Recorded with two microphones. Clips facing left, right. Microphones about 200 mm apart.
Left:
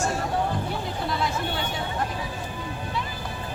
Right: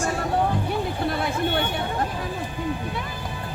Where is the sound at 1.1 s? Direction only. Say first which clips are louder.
Right 2 dB; 60° right (ahead or behind).